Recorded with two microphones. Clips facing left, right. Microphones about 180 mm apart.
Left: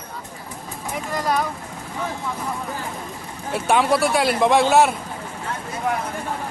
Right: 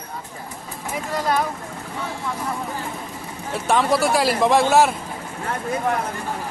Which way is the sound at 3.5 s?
Centre (ahead or behind).